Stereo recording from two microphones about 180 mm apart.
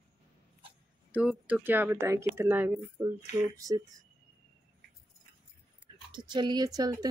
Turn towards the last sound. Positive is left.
turn(degrees=-20)  # may be behind; listen again after turning